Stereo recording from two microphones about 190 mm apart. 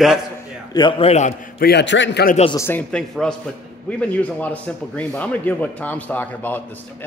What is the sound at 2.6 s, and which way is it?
A man's voice, 10° left (ahead or behind).